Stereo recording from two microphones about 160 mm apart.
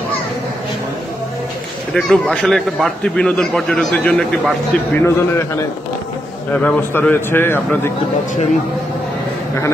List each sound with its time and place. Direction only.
2.0 s a man's voice: centre (ahead or behind)
5.0 s a man's voice: 15° left (ahead or behind)